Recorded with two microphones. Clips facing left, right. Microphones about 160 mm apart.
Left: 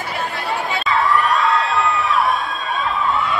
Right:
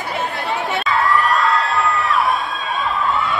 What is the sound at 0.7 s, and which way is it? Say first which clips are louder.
Crowd: even; centre (ahead or behind).